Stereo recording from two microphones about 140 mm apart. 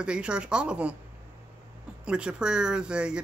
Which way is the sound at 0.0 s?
5° right (ahead or behind).